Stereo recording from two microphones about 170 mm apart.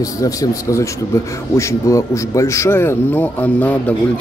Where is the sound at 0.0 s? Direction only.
20° left (ahead or behind).